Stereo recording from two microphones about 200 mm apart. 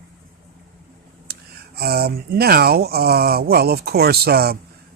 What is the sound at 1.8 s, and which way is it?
Speech, 50° right (ahead or behind).